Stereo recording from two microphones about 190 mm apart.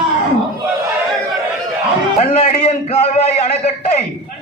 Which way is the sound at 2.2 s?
35° left (ahead or behind).